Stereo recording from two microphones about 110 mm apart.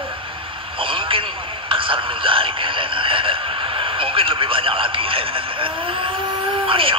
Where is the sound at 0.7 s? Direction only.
50° right (ahead or behind).